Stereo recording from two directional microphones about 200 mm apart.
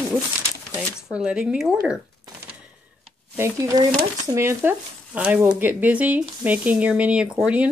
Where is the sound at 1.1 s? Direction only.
5° right (ahead or behind).